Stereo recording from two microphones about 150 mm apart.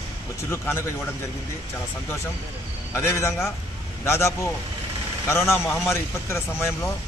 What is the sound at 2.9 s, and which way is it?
Speech, 15° left (ahead or behind).